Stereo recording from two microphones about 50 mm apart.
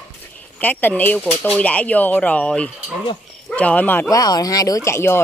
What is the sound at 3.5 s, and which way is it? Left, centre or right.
Speech, left.